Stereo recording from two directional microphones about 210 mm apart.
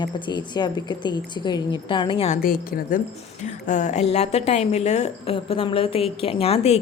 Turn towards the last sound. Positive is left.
turn(degrees=30)  # may be behind; listen again after turning